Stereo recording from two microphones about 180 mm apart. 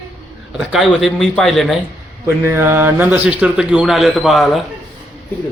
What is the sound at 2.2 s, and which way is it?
Speech, 15° right (ahead or behind).